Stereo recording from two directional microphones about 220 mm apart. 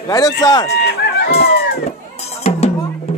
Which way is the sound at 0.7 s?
45° left (ahead or behind).